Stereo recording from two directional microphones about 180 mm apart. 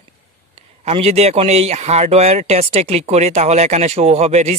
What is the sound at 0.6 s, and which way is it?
A man's voice, 35° right (ahead or behind).